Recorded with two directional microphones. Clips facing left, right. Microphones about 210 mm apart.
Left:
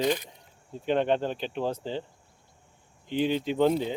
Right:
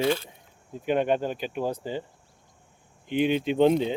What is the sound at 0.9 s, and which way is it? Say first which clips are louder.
Speech: right 1 dB; 10° right (ahead or behind).